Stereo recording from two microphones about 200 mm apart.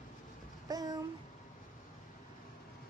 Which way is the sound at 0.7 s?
20° right (ahead or behind).